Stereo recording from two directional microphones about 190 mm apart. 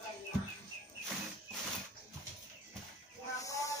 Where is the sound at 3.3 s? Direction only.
15° left (ahead or behind).